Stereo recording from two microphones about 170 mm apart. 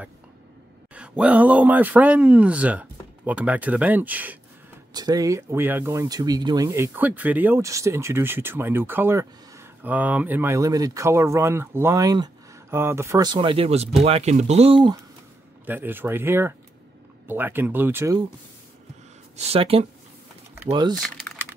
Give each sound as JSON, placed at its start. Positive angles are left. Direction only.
{"t": 0.9, "sound": "speech", "side_deg": -5}
{"t": 4.9, "sound": "speech", "side_deg": -25}
{"t": 15.6, "sound": "speech", "side_deg": -10}
{"t": 19.3, "sound": "speech", "side_deg": -35}